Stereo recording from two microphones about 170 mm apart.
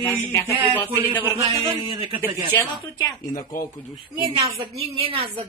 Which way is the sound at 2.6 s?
20° left (ahead or behind).